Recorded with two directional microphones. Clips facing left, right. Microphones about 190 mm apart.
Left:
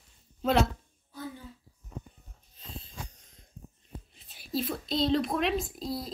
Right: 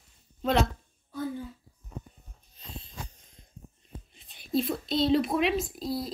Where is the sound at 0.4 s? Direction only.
Centre (ahead or behind).